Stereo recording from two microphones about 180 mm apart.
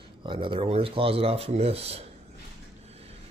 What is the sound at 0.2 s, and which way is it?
Speech, 30° right (ahead or behind).